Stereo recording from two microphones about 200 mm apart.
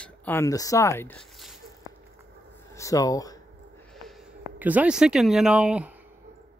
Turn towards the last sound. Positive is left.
turn(degrees=-5)  # may be behind; listen again after turning